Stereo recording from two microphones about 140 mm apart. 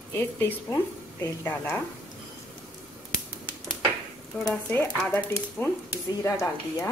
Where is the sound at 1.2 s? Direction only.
20° left (ahead or behind).